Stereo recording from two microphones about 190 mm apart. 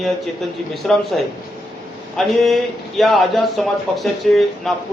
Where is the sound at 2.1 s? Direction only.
Centre (ahead or behind).